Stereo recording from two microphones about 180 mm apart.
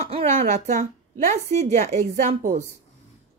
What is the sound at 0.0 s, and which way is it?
A woman's voice, 35° right (ahead or behind).